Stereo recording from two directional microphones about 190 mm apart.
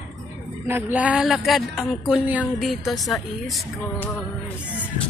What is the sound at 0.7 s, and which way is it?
Speech, 10° right (ahead or behind).